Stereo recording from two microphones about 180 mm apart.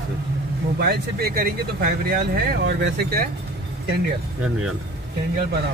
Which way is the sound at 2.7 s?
70° right (ahead or behind).